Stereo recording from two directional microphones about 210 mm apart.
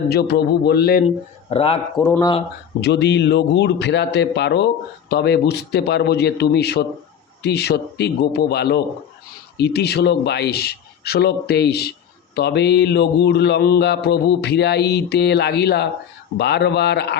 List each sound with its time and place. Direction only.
0.1 s speech: 50° left (ahead or behind)
1.0 s speech: 25° left (ahead or behind)
2.0 s speech: 10° left (ahead or behind)
2.8 s speech: 55° left (ahead or behind)